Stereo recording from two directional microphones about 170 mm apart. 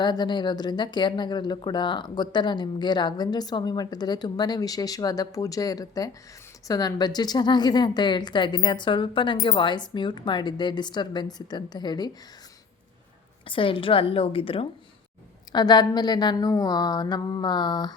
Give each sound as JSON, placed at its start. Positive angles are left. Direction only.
{"t": 0.0, "sound": "speech", "side_deg": 25}
{"t": 13.5, "sound": "a woman's voice", "side_deg": 30}